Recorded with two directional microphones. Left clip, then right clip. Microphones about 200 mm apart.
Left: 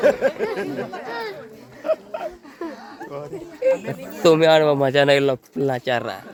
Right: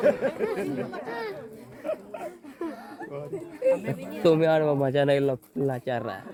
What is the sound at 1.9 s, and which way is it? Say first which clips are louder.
Speech: left 9 dB; 35° left (ahead or behind).